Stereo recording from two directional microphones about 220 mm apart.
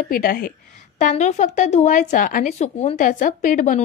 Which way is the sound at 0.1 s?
40° left (ahead or behind).